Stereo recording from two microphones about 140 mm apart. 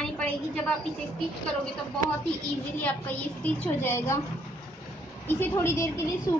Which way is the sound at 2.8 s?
10° left (ahead or behind).